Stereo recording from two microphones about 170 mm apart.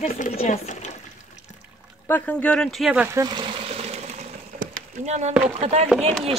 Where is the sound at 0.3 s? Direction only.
40° left (ahead or behind).